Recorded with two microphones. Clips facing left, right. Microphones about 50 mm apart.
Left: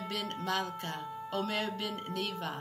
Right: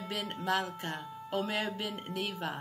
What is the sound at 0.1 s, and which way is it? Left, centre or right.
Speech, centre.